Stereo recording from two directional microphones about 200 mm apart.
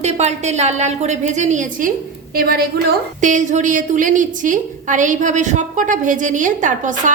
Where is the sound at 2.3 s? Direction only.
50° right (ahead or behind).